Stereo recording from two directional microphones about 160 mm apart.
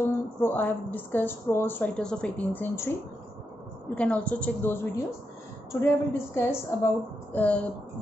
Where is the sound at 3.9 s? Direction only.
10° left (ahead or behind).